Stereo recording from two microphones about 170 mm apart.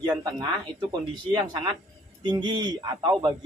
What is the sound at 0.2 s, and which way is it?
Speech, 25° right (ahead or behind).